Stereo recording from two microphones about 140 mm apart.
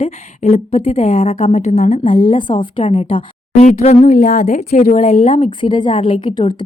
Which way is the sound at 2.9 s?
45° left (ahead or behind).